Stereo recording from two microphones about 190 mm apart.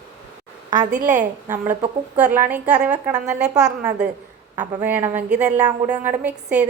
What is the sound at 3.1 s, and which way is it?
Speech, 40° right (ahead or behind).